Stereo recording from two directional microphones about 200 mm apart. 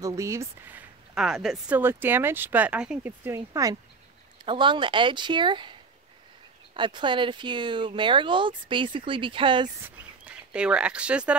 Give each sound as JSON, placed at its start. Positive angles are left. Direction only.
{"t": 0.0, "sound": "speech", "side_deg": -15}
{"t": 9.8, "sound": "speech", "side_deg": -5}